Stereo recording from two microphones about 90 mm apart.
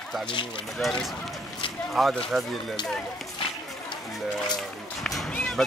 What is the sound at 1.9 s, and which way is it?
Speech, centre (ahead or behind).